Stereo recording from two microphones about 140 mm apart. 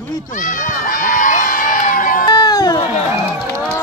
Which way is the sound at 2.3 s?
30° left (ahead or behind).